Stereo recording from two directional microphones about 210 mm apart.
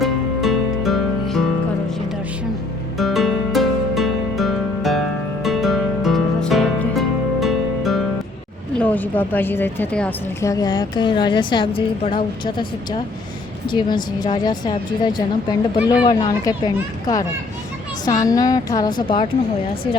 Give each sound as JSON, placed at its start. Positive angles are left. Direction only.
{"t": 0.0, "sound": "music", "side_deg": 0}
{"t": 3.0, "sound": "music", "side_deg": 0}
{"t": 8.7, "sound": "a woman's voice", "side_deg": 5}
{"t": 13.7, "sound": "a woman's voice", "side_deg": 20}